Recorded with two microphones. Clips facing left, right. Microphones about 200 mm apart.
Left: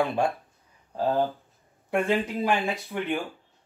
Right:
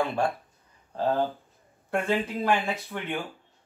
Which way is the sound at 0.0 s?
15° left (ahead or behind).